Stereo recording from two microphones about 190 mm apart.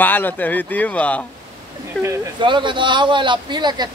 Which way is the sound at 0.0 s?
10° left (ahead or behind).